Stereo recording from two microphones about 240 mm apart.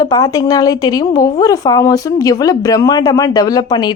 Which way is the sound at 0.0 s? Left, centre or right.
Centre.